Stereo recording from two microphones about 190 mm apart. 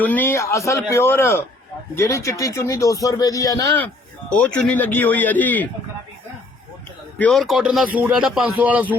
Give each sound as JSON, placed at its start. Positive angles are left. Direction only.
{"t": 0.0, "sound": "speech", "side_deg": 10}
{"t": 4.4, "sound": "speech", "side_deg": 5}
{"t": 7.2, "sound": "a man's voice", "side_deg": 0}